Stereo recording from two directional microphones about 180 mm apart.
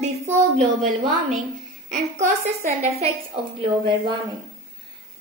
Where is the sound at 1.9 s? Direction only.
40° right (ahead or behind).